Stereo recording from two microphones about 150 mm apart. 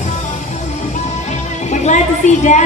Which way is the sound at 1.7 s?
50° left (ahead or behind).